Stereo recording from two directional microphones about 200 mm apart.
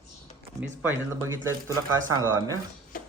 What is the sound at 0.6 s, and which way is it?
Speech, 10° right (ahead or behind).